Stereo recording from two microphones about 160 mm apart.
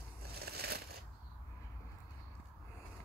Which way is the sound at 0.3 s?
80° right.